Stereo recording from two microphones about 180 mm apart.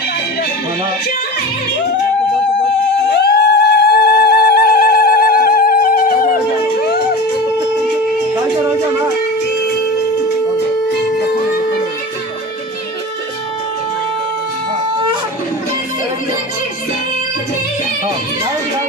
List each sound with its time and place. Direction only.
3.1 s music: 65° left (ahead or behind)
6.8 s music: 60° left (ahead or behind)